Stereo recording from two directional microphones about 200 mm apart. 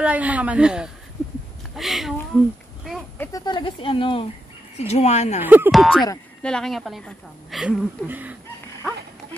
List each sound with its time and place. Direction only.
0.0 s a woman's voice: 5° right (ahead or behind)
3.2 s speech: 15° left (ahead or behind); by 5.4 s 35° left (ahead or behind)
5.4 s a woman's voice: 10° right (ahead or behind)